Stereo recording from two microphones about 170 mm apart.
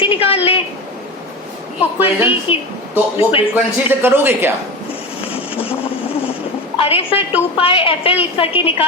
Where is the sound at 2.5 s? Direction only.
30° left (ahead or behind).